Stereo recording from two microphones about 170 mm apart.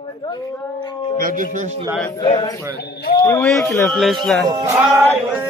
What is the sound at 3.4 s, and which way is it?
Speech, 5° left (ahead or behind).